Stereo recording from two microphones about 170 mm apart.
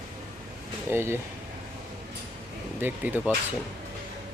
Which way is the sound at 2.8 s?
10° right (ahead or behind).